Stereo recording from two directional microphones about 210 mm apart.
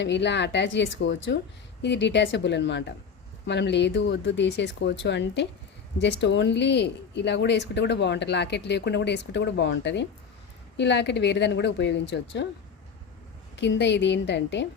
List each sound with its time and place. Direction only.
0.0 s speech: 55° left (ahead or behind)
13.6 s speech: 55° left (ahead or behind)